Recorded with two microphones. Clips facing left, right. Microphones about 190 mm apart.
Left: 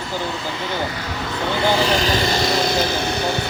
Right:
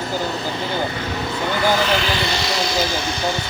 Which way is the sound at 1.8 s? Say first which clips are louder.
Left 2 dB; 35° left (ahead or behind).